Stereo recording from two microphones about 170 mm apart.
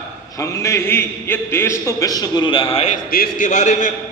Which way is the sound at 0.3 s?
20° left (ahead or behind).